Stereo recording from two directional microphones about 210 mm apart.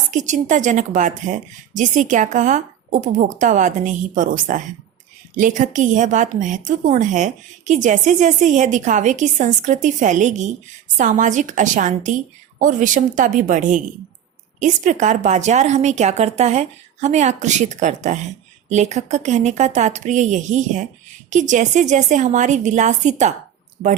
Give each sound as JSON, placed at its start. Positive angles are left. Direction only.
{"t": 0.1, "sound": "a woman's voice", "side_deg": -35}